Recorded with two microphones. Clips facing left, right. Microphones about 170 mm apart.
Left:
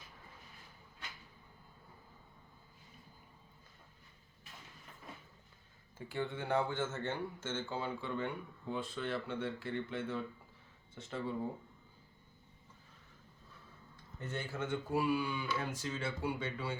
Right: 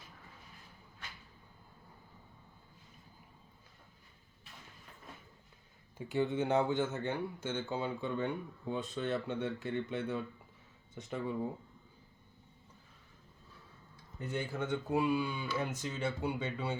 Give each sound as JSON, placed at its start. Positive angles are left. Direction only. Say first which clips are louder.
{"t": 6.1, "sound": "speech", "louder": "right 5 dB", "side_deg": -20}
{"t": 14.2, "sound": "speech", "louder": "right 3 dB", "side_deg": -15}